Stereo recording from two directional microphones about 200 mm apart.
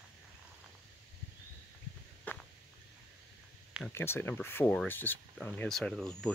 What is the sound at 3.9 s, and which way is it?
Speech, 10° left (ahead or behind).